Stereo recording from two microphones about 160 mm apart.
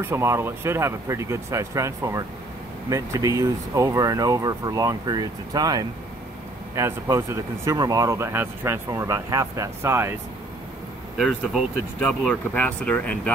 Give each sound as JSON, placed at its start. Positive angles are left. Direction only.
{"t": 0.0, "sound": "speech", "side_deg": -15}
{"t": 11.1, "sound": "speech", "side_deg": 0}